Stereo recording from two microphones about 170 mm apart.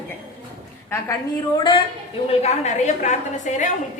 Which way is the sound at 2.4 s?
40° left (ahead or behind).